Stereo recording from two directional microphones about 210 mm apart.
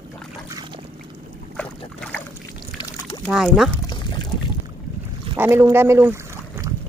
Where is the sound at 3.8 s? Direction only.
20° left (ahead or behind).